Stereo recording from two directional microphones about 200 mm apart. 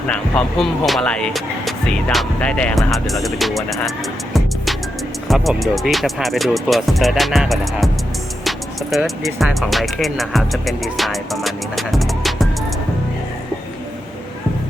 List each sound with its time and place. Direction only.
0.1 s speech: 5° left (ahead or behind)
4.4 s music: centre (ahead or behind)
5.3 s speech: centre (ahead or behind)